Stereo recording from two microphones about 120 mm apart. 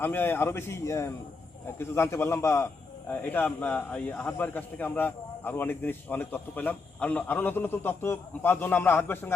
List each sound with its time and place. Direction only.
0.0 s a man's voice: 15° left (ahead or behind)